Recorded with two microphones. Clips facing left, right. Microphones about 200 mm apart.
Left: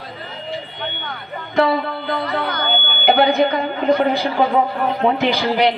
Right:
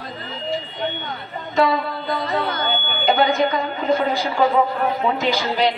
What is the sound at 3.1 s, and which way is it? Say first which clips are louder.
Speech: left 3 dB; 60° left (ahead or behind).